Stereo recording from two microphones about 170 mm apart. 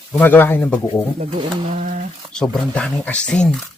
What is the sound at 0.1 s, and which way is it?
Speech, 10° left (ahead or behind).